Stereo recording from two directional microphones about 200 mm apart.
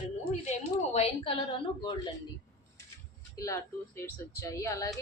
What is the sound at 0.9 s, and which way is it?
Speech, 30° left (ahead or behind).